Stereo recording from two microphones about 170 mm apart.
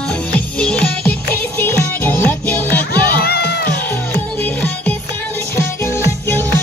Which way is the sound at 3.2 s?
70° left (ahead or behind).